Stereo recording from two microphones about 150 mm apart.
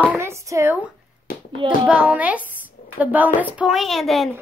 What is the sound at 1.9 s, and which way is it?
A woman's voice, 10° right (ahead or behind).